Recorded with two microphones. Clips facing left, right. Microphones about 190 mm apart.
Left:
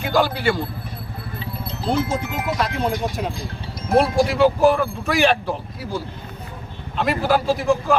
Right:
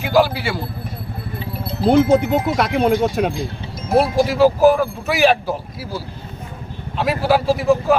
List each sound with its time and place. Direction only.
0.0 s a sound: 5° right (ahead or behind)
1.9 s speech: 65° right (ahead or behind)
3.8 s speech: 5° right (ahead or behind)